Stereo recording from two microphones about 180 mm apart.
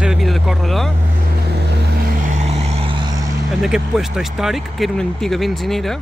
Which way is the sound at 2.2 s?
40° right (ahead or behind).